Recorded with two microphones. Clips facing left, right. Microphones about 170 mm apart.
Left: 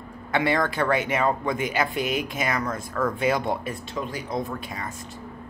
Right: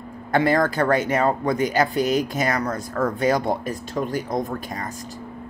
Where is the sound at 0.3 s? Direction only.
40° right (ahead or behind).